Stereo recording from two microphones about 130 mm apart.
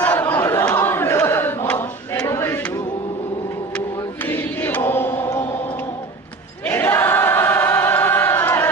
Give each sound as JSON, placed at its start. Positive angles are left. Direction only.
{"t": 0.0, "sound": "a sound", "side_deg": 10}
{"t": 4.3, "sound": "chant", "side_deg": 15}
{"t": 6.6, "sound": "choir", "side_deg": 15}